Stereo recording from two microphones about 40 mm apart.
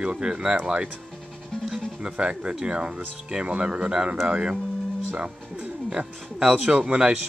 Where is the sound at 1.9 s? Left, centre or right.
Right.